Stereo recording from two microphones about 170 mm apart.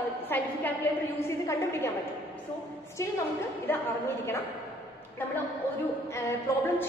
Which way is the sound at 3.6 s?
15° left (ahead or behind).